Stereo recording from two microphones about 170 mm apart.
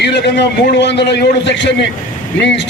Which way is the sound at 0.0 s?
80° left.